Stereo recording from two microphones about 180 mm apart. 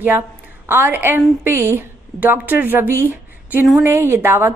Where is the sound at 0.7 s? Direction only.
10° right (ahead or behind).